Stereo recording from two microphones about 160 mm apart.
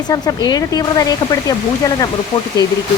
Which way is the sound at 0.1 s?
25° left (ahead or behind).